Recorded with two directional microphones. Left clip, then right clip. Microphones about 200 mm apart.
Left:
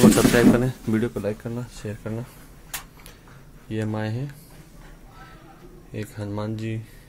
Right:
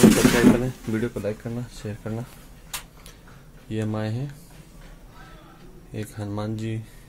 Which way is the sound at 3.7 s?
Centre (ahead or behind).